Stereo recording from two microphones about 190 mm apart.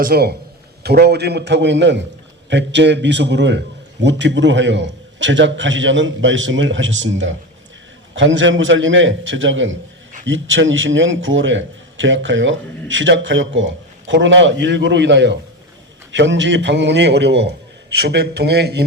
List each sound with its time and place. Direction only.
0.0 s a man's voice: 55° right (ahead or behind)